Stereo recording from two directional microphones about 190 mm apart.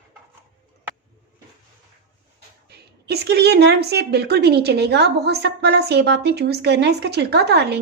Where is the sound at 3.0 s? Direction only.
60° right (ahead or behind).